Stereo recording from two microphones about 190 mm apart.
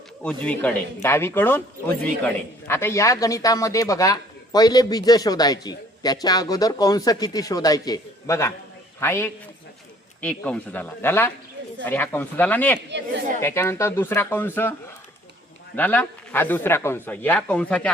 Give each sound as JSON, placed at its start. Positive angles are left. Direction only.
{"t": 0.2, "sound": "a man's voice", "side_deg": 5}